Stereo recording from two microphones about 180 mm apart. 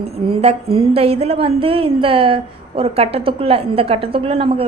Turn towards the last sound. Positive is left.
turn(degrees=-30)  # may be behind; listen again after turning